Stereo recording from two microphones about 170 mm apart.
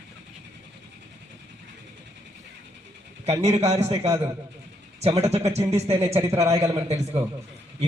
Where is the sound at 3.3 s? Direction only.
40° right (ahead or behind).